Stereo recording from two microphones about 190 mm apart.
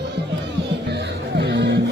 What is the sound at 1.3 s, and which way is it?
Music, 65° right (ahead or behind).